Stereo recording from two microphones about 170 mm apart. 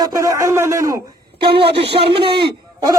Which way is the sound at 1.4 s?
30° right (ahead or behind).